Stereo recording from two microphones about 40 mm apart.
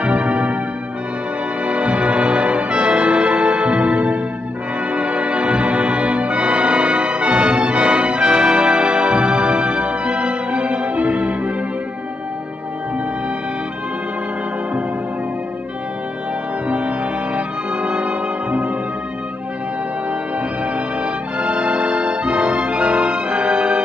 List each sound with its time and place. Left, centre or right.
0.0 s music: right
1.6 s music: right
16.6 s music: right
20.1 s music: right